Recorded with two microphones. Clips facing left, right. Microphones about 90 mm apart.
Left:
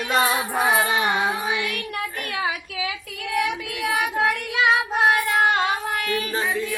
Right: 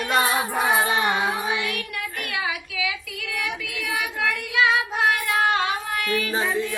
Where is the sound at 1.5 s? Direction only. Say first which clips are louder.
Even; 20° right (ahead or behind).